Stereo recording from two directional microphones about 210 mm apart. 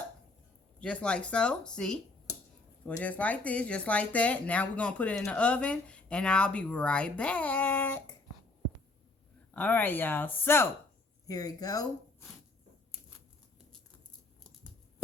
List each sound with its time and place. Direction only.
0.8 s speech: 5° left (ahead or behind)
9.5 s speech: 5° left (ahead or behind)